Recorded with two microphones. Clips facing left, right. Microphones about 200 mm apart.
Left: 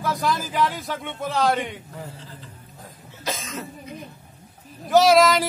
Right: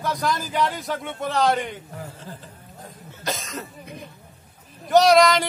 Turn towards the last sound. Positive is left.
turn(degrees=0)  # may be behind; listen again after turning